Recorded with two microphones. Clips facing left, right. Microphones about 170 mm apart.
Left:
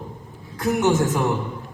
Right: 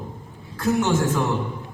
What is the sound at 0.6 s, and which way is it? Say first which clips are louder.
Speech: left 1 dB; 15° left (ahead or behind).